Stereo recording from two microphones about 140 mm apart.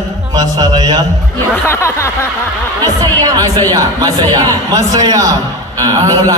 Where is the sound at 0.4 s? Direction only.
30° right (ahead or behind).